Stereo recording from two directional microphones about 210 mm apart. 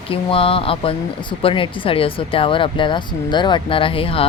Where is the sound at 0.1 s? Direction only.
25° left (ahead or behind).